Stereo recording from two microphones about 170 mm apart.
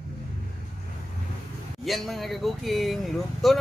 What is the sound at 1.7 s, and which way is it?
Speech, centre (ahead or behind).